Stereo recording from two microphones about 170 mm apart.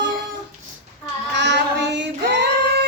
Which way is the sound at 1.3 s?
90° right.